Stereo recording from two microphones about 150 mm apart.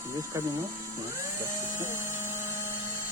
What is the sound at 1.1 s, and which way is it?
Dental drill, 20° right (ahead or behind).